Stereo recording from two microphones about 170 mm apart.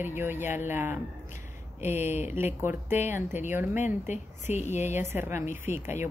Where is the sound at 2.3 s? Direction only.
15° right (ahead or behind).